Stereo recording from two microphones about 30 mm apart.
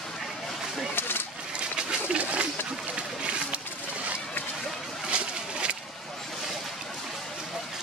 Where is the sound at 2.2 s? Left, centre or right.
Right.